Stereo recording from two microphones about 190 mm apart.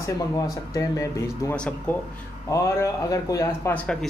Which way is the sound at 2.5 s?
15° left (ahead or behind).